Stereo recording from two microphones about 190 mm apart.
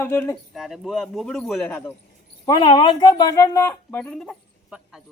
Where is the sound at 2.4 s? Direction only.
20° left (ahead or behind).